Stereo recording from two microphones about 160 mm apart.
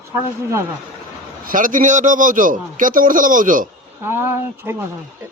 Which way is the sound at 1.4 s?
60° right (ahead or behind).